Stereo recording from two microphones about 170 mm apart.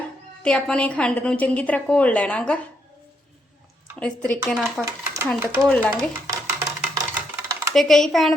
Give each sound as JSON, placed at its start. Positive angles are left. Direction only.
{"t": 0.4, "sound": "a woman's voice", "side_deg": 5}
{"t": 4.0, "sound": "a woman's voice", "side_deg": 5}
{"t": 4.8, "sound": "speech", "side_deg": -15}
{"t": 5.3, "sound": "speech", "side_deg": 5}
{"t": 6.0, "sound": "a sound", "side_deg": -20}
{"t": 7.7, "sound": "speech", "side_deg": 0}